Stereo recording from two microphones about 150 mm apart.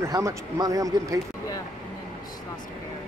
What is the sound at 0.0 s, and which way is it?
A man's voice, 20° right (ahead or behind).